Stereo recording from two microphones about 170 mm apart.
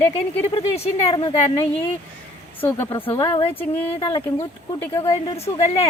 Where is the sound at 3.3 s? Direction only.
35° left (ahead or behind).